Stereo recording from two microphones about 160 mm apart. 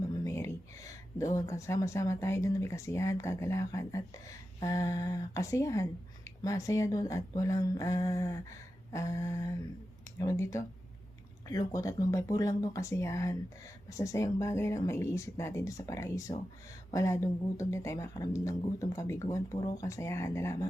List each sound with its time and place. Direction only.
0.1 s speech: 20° left (ahead or behind)